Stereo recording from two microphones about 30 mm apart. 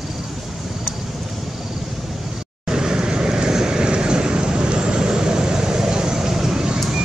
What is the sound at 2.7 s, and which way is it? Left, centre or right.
Vehicle, right.